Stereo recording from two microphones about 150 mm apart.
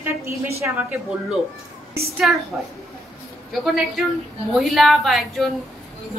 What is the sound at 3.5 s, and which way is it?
A woman's voice, centre (ahead or behind).